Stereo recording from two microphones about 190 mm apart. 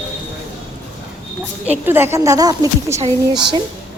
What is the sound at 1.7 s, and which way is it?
A woman's voice, 10° right (ahead or behind).